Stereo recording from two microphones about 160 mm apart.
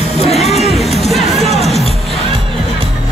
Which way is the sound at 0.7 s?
Centre (ahead or behind).